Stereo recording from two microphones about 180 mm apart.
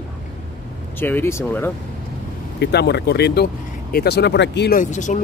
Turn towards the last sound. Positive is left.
turn(degrees=45)  # may be behind; listen again after turning